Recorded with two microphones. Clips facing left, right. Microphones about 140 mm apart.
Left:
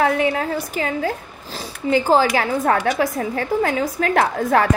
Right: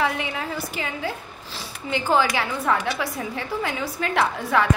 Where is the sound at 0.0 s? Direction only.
45° left (ahead or behind).